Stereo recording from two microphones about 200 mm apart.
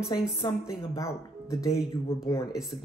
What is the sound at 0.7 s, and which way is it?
Speech, 15° left (ahead or behind).